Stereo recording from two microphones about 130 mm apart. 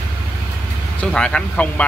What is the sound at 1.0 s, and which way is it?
Speech, 5° left (ahead or behind).